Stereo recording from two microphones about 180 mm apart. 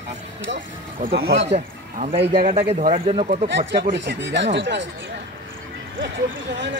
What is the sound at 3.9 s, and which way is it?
Speech, 85° right.